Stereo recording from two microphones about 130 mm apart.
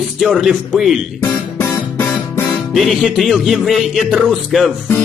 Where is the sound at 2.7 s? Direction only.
Centre (ahead or behind).